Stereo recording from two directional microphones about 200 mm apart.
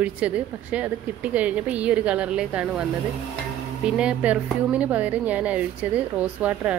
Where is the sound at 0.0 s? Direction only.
5° right (ahead or behind).